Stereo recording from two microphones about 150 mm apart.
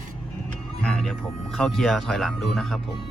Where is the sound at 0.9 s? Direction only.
Centre (ahead or behind).